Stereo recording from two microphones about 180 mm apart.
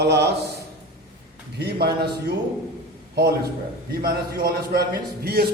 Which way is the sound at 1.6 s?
60° right (ahead or behind).